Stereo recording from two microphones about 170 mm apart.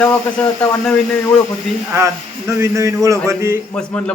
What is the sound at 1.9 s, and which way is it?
Speech, 15° right (ahead or behind).